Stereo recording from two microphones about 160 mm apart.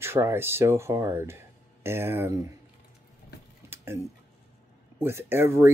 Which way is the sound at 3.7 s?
15° right (ahead or behind).